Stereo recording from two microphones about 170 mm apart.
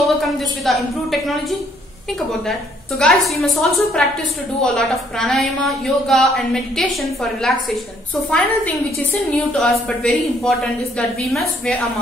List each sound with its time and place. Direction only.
0.2 s a woman's voice: centre (ahead or behind)
2.4 s a woman's voice: centre (ahead or behind)